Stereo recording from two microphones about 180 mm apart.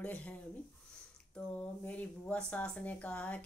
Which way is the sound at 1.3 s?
10° left (ahead or behind).